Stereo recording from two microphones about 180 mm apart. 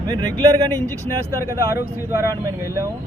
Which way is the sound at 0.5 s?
20° right (ahead or behind).